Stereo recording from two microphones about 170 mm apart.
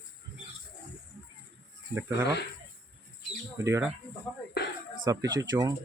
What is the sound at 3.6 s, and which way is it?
Speech, 15° right (ahead or behind).